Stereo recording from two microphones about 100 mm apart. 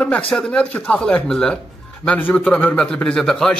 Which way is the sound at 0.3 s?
10° left (ahead or behind).